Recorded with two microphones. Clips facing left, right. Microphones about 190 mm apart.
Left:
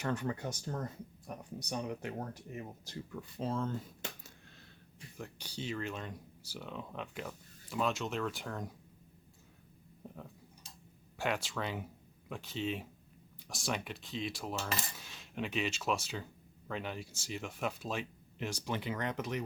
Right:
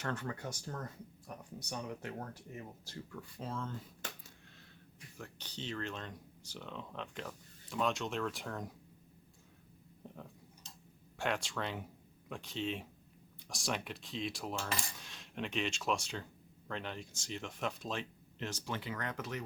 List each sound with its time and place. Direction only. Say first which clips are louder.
0.0 s speech: left 4 dB; 15° left (ahead or behind); by 3.8 s 35° left (ahead or behind)
4.9 s speech: left 4 dB; 15° left (ahead or behind); by 8.7 s centre (ahead or behind)
11.2 s speech: left 1 dB; 5° left (ahead or behind)
14.8 s cutlery: left 1 dB; 5° left (ahead or behind)
16.6 s speech: left 2 dB; 5° left (ahead or behind)